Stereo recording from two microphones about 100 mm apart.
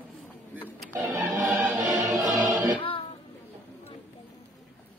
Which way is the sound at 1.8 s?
35° right (ahead or behind).